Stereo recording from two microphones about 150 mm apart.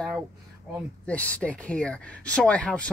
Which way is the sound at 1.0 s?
10° left (ahead or behind).